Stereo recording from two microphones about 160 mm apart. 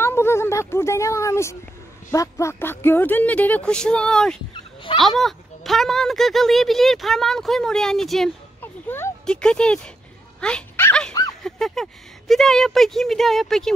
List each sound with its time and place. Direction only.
0.0 s speech: 15° left (ahead or behind)
8.5 s a sound: 15° left (ahead or behind)
9.2 s speech: 5° left (ahead or behind)